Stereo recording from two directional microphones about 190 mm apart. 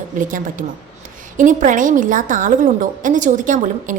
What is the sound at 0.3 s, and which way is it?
A woman's voice, 45° right (ahead or behind).